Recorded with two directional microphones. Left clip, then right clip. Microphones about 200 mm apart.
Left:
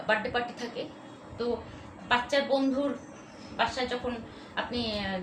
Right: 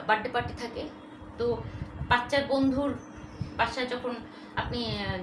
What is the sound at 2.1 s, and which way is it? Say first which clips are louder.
Speech: even; 15° right (ahead or behind).